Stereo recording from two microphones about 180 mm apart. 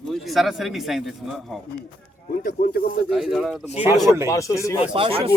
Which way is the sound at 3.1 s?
Centre (ahead or behind).